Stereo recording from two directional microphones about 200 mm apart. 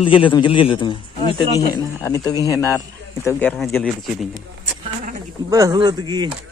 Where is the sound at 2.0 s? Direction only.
15° left (ahead or behind).